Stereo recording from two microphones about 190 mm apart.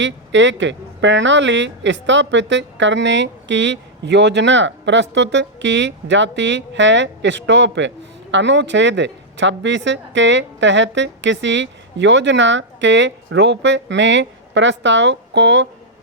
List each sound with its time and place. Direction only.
0.0 s speech: 70° right (ahead or behind)